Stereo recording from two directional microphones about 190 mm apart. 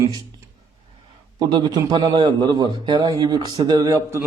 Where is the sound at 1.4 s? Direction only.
20° right (ahead or behind).